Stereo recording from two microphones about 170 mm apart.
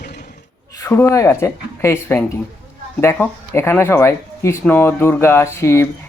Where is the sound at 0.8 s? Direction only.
15° left (ahead or behind).